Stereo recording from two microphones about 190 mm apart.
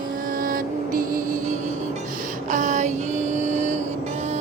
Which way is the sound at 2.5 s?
40° right (ahead or behind).